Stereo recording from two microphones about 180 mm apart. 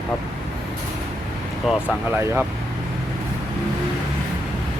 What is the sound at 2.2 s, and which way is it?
Speech, 15° right (ahead or behind).